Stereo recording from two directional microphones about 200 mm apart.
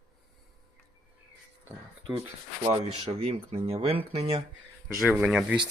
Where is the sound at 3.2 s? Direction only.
30° right (ahead or behind).